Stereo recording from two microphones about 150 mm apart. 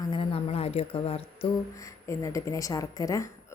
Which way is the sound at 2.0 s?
20° left (ahead or behind).